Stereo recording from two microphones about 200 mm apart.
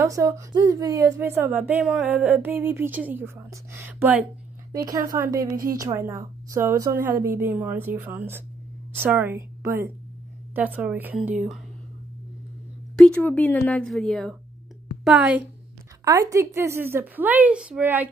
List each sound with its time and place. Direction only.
0.0 s a woman's voice: 15° right (ahead or behind)
13.0 s a woman's voice: 5° left (ahead or behind)